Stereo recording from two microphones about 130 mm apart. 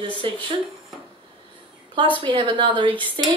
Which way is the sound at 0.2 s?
40° right (ahead or behind).